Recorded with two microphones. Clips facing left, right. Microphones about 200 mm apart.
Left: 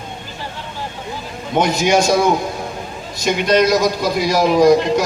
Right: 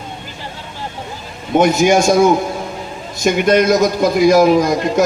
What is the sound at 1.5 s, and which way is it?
Speech, 50° right (ahead or behind).